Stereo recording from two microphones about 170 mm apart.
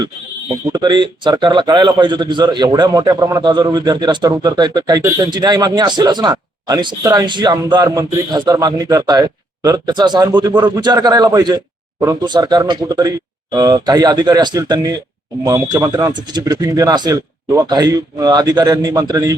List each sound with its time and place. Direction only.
0.7 s a man's voice: 25° right (ahead or behind)